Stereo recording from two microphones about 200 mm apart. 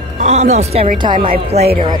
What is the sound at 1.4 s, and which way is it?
Speech, 30° right (ahead or behind).